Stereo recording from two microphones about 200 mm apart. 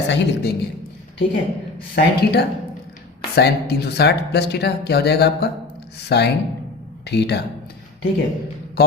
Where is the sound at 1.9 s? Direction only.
50° left (ahead or behind).